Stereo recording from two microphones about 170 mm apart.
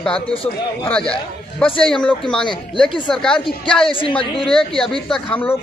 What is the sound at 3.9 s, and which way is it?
Speech, 30° left (ahead or behind).